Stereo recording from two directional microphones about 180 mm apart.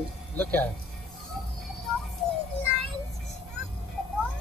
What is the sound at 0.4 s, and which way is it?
Speech, 10° left (ahead or behind).